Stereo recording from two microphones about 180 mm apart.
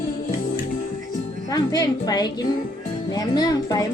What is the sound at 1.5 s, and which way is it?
Speech, 20° left (ahead or behind).